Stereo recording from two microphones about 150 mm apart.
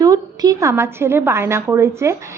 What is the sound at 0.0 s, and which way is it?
A woman's voice, 25° right (ahead or behind).